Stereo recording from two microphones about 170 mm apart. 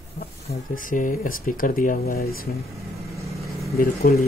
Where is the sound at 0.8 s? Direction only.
50° left (ahead or behind).